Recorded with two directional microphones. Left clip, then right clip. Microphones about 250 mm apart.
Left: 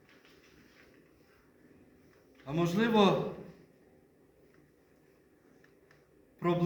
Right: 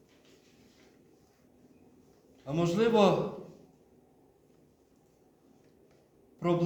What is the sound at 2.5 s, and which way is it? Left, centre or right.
Speech, centre.